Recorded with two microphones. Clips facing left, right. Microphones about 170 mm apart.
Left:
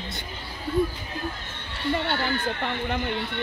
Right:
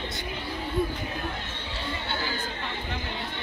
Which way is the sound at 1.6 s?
60° left (ahead or behind).